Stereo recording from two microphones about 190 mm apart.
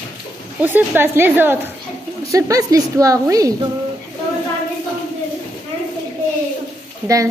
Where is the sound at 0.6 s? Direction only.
10° right (ahead or behind).